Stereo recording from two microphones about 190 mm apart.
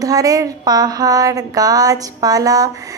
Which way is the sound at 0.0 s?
20° right (ahead or behind).